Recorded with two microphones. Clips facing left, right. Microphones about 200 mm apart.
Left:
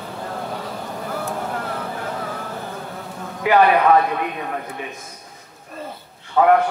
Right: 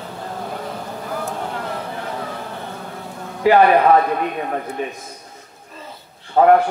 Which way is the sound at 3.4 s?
35° right (ahead or behind).